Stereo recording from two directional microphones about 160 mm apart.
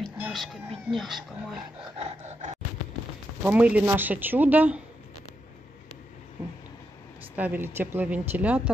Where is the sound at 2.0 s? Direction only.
40° right (ahead or behind).